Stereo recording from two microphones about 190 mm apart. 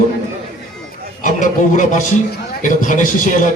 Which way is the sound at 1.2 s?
40° left (ahead or behind).